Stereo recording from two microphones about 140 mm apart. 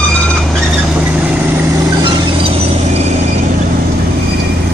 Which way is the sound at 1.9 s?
35° right (ahead or behind).